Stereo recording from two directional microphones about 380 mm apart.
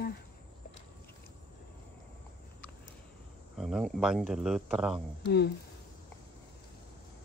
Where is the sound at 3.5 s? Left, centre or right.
Centre.